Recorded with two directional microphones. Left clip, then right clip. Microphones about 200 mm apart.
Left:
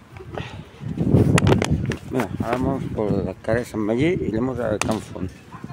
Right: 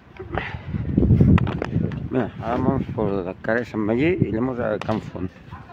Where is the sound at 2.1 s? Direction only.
10° right (ahead or behind).